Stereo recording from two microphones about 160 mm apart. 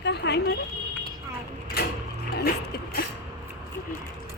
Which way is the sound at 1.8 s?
75° left (ahead or behind).